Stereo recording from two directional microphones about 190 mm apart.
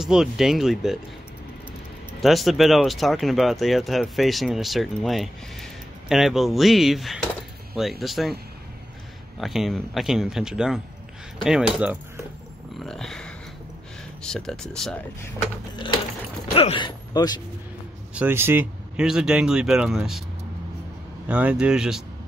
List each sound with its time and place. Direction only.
0.0 s speech: 5° right (ahead or behind)
2.2 s speech: centre (ahead or behind)
9.4 s speech: centre (ahead or behind)
16.5 s speech: 25° left (ahead or behind)
18.1 s speech: 10° right (ahead or behind)
21.3 s speech: 5° right (ahead or behind)